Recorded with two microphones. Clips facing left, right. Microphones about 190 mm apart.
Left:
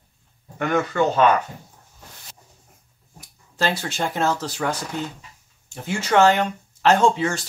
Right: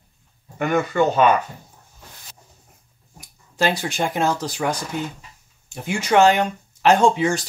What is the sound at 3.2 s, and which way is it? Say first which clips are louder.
Speech: right 3 dB; 15° right (ahead or behind).